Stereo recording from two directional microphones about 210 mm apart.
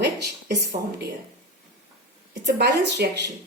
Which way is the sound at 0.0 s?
50° right (ahead or behind).